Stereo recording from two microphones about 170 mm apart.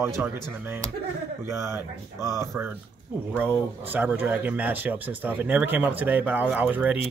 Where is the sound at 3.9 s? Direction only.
10° right (ahead or behind).